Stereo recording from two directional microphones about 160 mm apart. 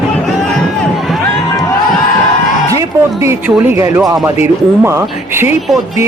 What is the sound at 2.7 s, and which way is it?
A man's voice, 20° right (ahead or behind).